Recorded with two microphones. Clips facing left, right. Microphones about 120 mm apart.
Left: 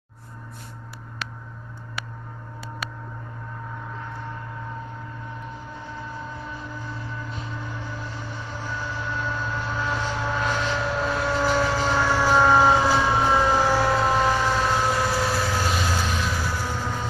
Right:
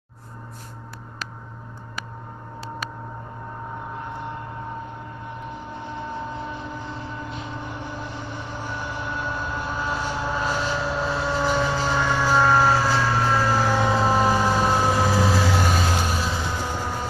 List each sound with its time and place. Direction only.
4.0 s vehicle: 20° right (ahead or behind)
5.8 s vehicle: 20° right (ahead or behind)
7.5 s train: 20° right (ahead or behind); by 12.1 s centre (ahead or behind)
12.1 s siren: 5° left (ahead or behind)
13.6 s vehicle: 5° left (ahead or behind); by 16.1 s 15° right (ahead or behind)
16.1 s music: 30° right (ahead or behind); by 17.1 s 10° right (ahead or behind)